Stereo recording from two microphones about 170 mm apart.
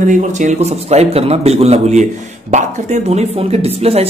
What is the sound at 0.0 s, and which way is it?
Speech, 45° right (ahead or behind).